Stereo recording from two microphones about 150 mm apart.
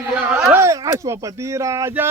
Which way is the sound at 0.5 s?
20° right (ahead or behind).